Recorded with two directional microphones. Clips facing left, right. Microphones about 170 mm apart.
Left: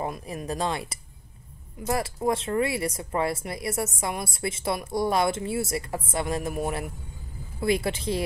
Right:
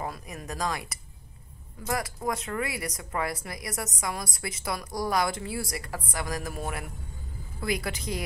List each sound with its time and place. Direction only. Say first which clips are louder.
0.0 s speech: left 5 dB; 25° left (ahead or behind)
7.6 s speech: left 6 dB; 25° left (ahead or behind)